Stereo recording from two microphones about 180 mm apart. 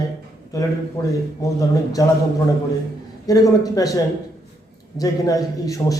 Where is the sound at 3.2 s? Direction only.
20° left (ahead or behind).